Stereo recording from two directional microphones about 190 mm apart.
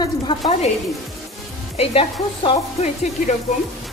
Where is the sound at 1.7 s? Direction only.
30° left (ahead or behind).